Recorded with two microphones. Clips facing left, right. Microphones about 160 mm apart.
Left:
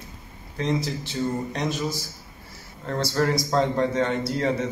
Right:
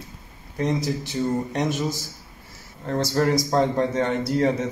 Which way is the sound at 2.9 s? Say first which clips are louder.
Right 2 dB; 20° right (ahead or behind).